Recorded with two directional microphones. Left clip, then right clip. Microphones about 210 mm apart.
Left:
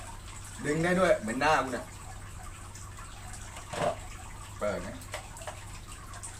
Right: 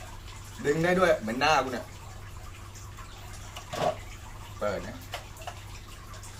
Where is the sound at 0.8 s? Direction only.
10° left (ahead or behind).